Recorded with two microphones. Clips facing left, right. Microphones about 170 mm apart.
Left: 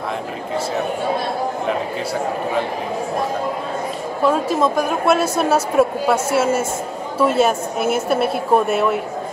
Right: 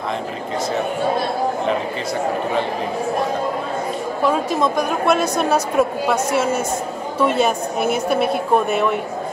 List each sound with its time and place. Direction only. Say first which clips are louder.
4.3 s speech: left 2 dB; 5° left (ahead or behind)